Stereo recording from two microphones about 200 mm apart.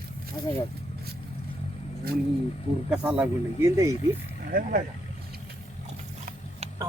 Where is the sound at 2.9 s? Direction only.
5° right (ahead or behind).